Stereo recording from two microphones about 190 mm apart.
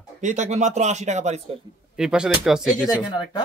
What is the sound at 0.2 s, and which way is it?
Speech, 40° right (ahead or behind).